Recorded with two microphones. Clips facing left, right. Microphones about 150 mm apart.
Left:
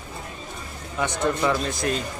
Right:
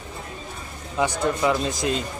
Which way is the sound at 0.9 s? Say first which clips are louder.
Right 1 dB; 10° right (ahead or behind).